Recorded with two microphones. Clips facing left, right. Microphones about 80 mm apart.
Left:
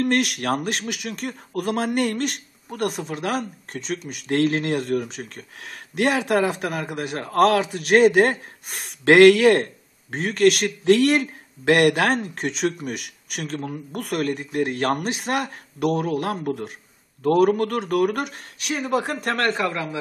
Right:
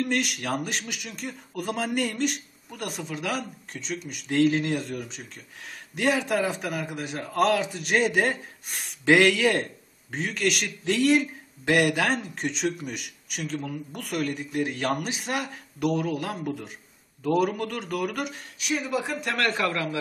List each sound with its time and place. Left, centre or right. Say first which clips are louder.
0.0 s speech: left 6 dB; left
19.5 s a man's voice: left 2 dB; centre